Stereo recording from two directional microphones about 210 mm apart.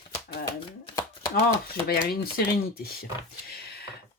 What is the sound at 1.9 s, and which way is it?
Speech, 45° left (ahead or behind).